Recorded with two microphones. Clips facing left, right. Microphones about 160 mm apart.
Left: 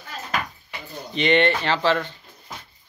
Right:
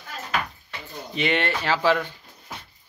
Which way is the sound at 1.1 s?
5° right (ahead or behind).